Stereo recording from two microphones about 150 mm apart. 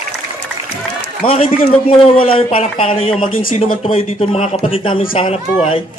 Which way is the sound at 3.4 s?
65° left (ahead or behind).